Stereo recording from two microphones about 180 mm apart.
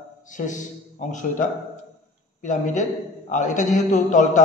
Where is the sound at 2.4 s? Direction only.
45° left (ahead or behind).